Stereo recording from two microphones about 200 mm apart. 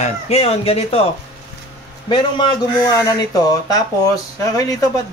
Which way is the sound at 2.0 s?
25° left (ahead or behind).